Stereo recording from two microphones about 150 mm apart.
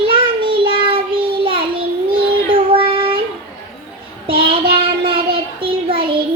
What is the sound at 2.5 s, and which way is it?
Child singing, 35° right (ahead or behind).